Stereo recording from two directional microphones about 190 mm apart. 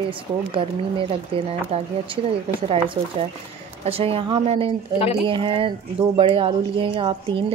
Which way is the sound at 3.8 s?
30° right (ahead or behind).